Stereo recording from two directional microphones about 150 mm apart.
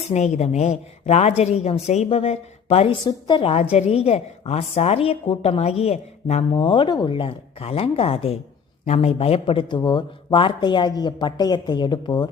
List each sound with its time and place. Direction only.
0.0 s a woman's voice: 50° left (ahead or behind); by 12.3 s 30° left (ahead or behind)